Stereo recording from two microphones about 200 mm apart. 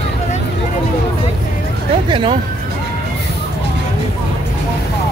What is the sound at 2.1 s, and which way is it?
Music, 25° right (ahead or behind).